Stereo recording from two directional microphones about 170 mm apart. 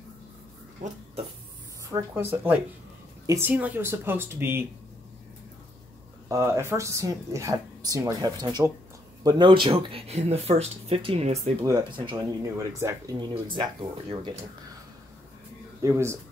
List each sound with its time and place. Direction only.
1.9 s speech: 15° right (ahead or behind)
6.2 s speech: 20° right (ahead or behind); by 11.5 s 40° right (ahead or behind)
11.6 s speech: 25° right (ahead or behind)
15.8 s speech: 15° right (ahead or behind)